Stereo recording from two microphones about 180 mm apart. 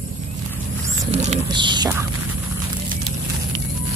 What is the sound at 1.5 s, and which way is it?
Speech, 25° right (ahead or behind).